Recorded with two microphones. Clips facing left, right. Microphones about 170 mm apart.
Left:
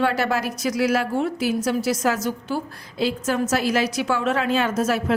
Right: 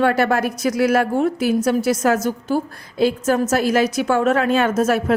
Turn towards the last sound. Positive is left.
turn(degrees=-50)  # may be behind; listen again after turning